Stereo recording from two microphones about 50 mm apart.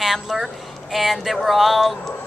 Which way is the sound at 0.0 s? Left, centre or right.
Centre.